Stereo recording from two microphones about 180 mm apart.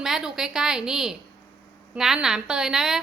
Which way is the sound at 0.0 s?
5° right (ahead or behind).